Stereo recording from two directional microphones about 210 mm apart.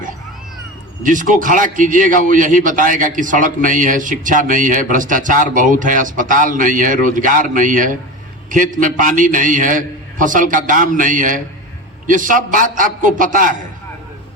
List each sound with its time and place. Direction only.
1.0 s a man's voice: 40° right (ahead or behind)